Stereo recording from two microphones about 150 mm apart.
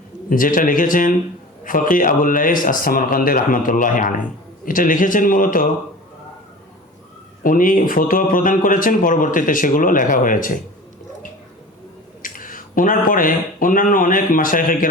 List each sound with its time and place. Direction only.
0.3 s speech: 65° left (ahead or behind)
7.4 s speech: 65° left (ahead or behind)
12.2 s speech: 65° left (ahead or behind)